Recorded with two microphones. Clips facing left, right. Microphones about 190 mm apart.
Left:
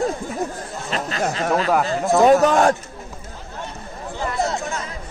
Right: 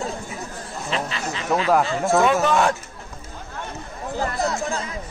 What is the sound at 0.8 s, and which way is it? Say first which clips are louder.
Speech: left 3 dB; 40° left (ahead or behind).